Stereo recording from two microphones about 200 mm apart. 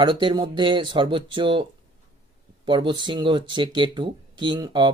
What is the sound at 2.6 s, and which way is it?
Speech, 25° right (ahead or behind).